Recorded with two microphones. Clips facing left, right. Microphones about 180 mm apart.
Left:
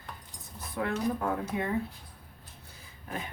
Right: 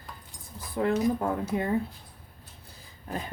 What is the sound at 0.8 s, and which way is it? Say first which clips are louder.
Speech: right 5 dB; 30° right (ahead or behind).